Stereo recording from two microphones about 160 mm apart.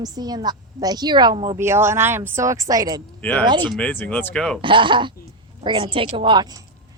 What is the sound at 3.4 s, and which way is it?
Speech, 30° right (ahead or behind).